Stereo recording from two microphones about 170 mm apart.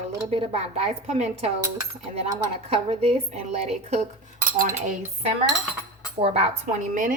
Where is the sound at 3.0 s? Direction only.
35° right (ahead or behind).